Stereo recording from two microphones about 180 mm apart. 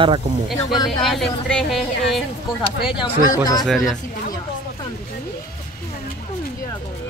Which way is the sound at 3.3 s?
20° left (ahead or behind).